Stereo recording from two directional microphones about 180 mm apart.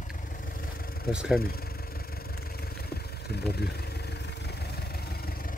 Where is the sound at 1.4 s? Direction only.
55° left (ahead or behind).